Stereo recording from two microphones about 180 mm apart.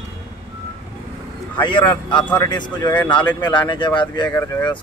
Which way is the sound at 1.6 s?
25° left (ahead or behind).